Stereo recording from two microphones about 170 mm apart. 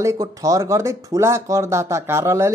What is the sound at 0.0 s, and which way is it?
Speech, 20° right (ahead or behind).